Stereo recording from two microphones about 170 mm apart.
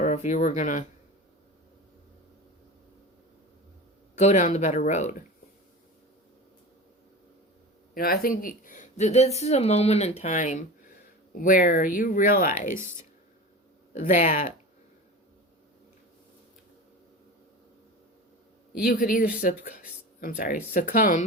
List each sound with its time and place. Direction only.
0.0 s speech: 45° left (ahead or behind)
4.1 s a woman's voice: 45° left (ahead or behind)
7.9 s a woman's voice: 60° left (ahead or behind)
12.5 s speech: 15° right (ahead or behind)
13.9 s a woman's voice: 50° left (ahead or behind)
18.7 s a man's voice: 60° left (ahead or behind)